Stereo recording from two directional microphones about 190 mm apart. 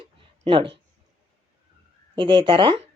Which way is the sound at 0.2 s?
30° right (ahead or behind).